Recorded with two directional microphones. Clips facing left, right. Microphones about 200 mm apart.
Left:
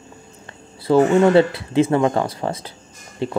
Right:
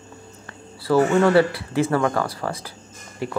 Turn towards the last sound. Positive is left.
turn(degrees=25)  # may be behind; listen again after turning